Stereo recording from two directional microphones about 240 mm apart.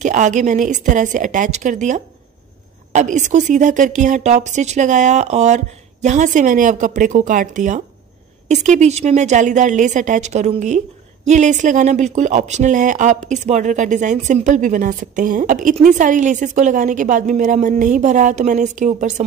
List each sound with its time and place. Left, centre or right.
0.0 s a woman's voice: right